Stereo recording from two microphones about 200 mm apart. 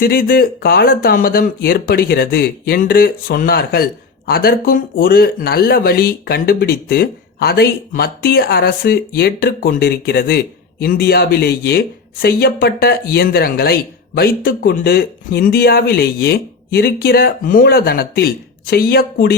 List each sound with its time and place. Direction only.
0.0 s speech: 45° left (ahead or behind)